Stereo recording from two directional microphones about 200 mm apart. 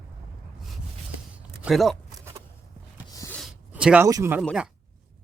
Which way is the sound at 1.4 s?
5° right (ahead or behind).